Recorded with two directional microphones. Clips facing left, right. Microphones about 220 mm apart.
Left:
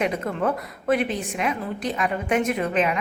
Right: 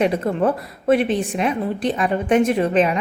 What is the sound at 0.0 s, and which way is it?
A woman's voice, 30° right (ahead or behind).